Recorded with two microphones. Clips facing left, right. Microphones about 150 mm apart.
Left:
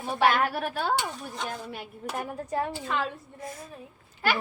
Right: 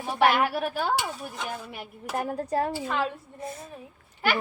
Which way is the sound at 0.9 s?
10° right (ahead or behind).